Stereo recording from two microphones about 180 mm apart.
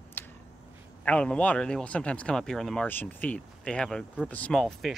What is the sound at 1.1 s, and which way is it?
Speech, 5° left (ahead or behind).